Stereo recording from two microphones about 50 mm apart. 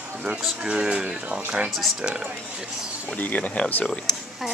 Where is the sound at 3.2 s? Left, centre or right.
Left.